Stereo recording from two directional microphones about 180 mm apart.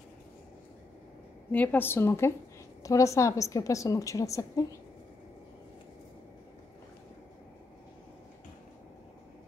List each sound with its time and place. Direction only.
1.5 s a woman's voice: 10° left (ahead or behind)